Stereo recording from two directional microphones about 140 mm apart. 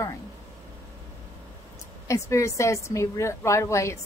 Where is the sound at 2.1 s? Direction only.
20° left (ahead or behind).